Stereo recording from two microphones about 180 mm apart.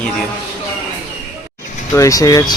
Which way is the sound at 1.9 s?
20° left (ahead or behind).